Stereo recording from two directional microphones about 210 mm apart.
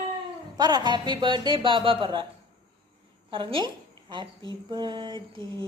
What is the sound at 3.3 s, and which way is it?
A woman's voice, 25° right (ahead or behind).